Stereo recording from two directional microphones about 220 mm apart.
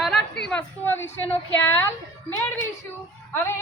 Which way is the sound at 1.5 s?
10° left (ahead or behind).